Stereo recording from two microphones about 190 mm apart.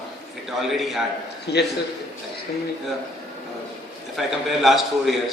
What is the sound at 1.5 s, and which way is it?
Speech, 60° left (ahead or behind).